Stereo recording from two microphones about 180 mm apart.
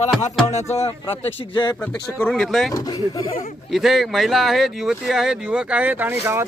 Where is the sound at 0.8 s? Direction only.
30° left (ahead or behind).